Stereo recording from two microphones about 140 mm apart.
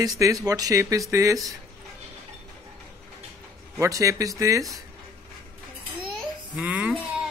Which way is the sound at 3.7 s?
25° right (ahead or behind).